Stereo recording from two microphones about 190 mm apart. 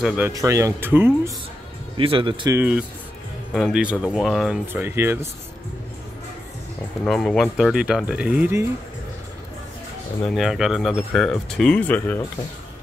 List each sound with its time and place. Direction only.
0.0 s speech: 5° right (ahead or behind)
0.3 s speech: 15° right (ahead or behind)
2.0 s speech: 25° right (ahead or behind)
2.5 s speech: 10° right (ahead or behind)
4.8 s speech: 10° right (ahead or behind)
7.1 s speech: centre (ahead or behind)
10.2 s speech: centre (ahead or behind)